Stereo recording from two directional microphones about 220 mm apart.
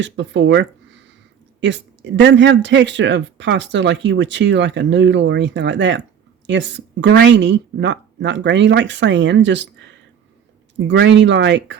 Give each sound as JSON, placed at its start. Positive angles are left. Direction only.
{"t": 0.0, "sound": "speech", "side_deg": -55}